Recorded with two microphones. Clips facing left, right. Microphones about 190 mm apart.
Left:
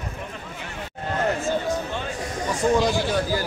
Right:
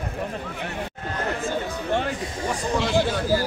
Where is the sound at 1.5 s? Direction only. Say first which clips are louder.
Left 1 dB; 60° right (ahead or behind).